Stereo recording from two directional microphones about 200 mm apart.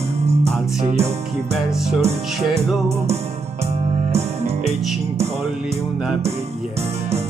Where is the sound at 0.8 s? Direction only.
30° right (ahead or behind).